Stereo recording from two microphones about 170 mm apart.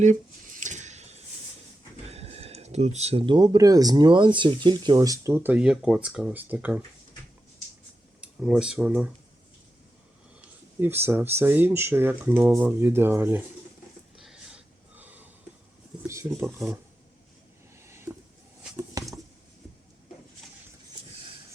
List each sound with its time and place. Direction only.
0.0 s squish: 45° right (ahead or behind)
2.0 s speech: 35° right (ahead or behind); by 6.8 s 10° right (ahead or behind)
8.2 s speech: 5° right (ahead or behind)
10.4 s speech: 15° right (ahead or behind)
14.2 s wheeze: 5° right (ahead or behind)
16.0 s speech: 15° right (ahead or behind)
17.8 s a sound: 15° right (ahead or behind)